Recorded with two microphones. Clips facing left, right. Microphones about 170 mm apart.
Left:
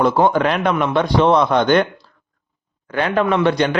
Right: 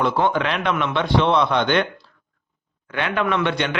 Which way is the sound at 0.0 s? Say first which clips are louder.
Left 5 dB; 40° left (ahead or behind).